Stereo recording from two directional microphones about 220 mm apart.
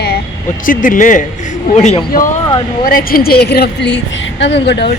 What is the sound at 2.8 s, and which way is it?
A woman's voice, 40° left (ahead or behind).